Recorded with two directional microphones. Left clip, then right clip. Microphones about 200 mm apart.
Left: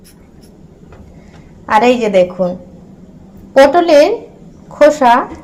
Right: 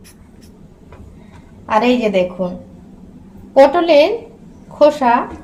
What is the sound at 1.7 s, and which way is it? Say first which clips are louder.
Speech: left 4 dB; 25° left (ahead or behind).